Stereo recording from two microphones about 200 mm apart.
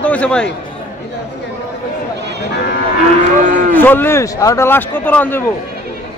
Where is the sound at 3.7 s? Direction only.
10° left (ahead or behind).